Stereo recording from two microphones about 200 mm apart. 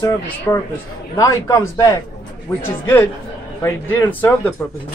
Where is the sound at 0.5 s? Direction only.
15° left (ahead or behind).